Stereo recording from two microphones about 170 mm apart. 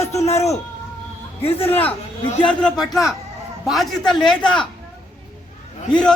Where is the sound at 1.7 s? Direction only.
10° left (ahead or behind).